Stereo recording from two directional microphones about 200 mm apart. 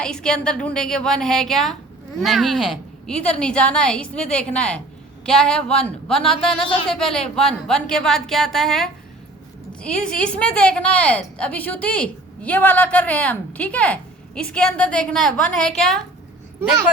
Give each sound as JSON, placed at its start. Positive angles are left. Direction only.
{"t": 0.0, "sound": "a woman's voice", "side_deg": 5}
{"t": 6.3, "sound": "speech", "side_deg": 25}
{"t": 6.9, "sound": "a woman's voice", "side_deg": 5}